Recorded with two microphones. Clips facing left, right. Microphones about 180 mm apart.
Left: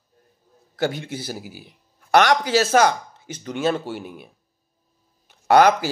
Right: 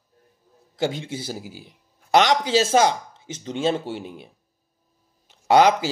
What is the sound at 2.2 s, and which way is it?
Speech, 25° right (ahead or behind).